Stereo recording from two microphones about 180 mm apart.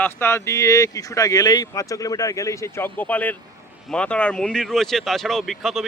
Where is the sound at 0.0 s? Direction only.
15° left (ahead or behind).